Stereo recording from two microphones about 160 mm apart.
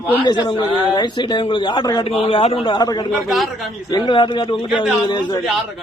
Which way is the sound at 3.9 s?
30° left (ahead or behind).